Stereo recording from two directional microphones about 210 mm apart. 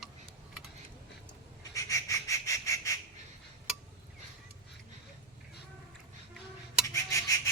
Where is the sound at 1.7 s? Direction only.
15° left (ahead or behind).